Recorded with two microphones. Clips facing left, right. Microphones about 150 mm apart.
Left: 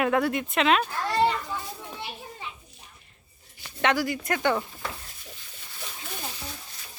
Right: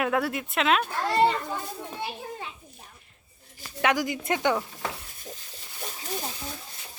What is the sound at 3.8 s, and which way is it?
Speech, 15° right (ahead or behind).